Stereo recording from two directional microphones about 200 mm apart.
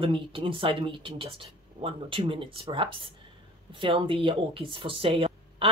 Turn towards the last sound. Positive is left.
turn(degrees=-25)  # may be behind; listen again after turning